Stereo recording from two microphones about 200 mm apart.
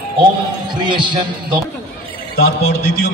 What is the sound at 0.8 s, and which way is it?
Speech, 25° right (ahead or behind).